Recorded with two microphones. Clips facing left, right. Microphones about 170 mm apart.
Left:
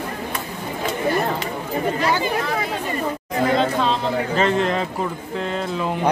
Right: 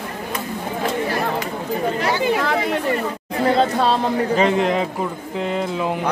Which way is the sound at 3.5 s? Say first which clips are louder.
Right 3 dB; 40° right (ahead or behind).